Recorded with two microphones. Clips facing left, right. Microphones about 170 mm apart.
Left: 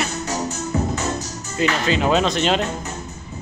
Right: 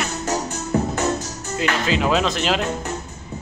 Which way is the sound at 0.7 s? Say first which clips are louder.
Right 3 dB; 55° right (ahead or behind).